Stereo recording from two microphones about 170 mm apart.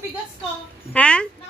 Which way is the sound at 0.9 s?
5° left (ahead or behind).